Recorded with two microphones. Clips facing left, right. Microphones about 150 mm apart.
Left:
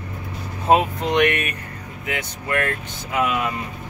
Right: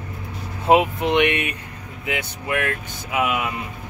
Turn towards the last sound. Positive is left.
turn(degrees=-10)  # may be behind; listen again after turning